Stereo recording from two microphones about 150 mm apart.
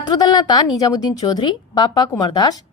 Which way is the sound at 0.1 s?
25° left (ahead or behind).